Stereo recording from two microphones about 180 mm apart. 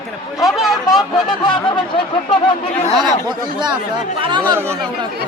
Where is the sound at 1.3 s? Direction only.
25° left (ahead or behind).